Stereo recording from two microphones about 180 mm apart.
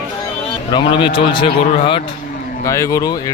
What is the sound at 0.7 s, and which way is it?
Speech, 25° left (ahead or behind).